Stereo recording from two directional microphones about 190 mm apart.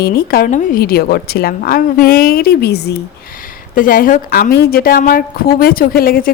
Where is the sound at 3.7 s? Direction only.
45° left (ahead or behind).